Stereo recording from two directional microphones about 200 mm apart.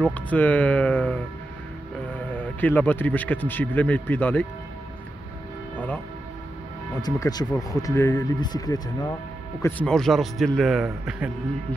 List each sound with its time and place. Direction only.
0.0 s speech: 10° left (ahead or behind)
2.3 s speech: 10° left (ahead or behind)
7.0 s speech: 20° left (ahead or behind)
9.6 s speech: 10° left (ahead or behind)